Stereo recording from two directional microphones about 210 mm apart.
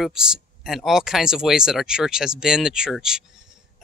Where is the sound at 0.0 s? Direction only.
5° right (ahead or behind).